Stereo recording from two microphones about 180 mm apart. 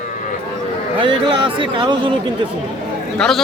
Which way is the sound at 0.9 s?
25° right (ahead or behind).